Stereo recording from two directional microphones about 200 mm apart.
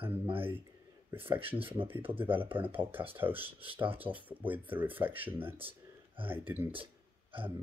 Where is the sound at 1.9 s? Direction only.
10° right (ahead or behind).